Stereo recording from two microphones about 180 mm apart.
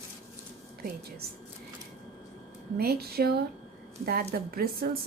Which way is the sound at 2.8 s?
60° right (ahead or behind).